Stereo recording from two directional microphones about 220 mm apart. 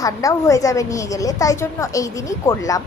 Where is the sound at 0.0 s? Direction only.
15° left (ahead or behind).